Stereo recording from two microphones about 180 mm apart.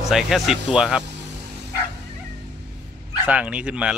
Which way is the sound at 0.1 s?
Centre (ahead or behind).